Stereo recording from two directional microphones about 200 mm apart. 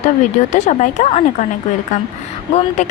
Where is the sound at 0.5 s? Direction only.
35° left (ahead or behind).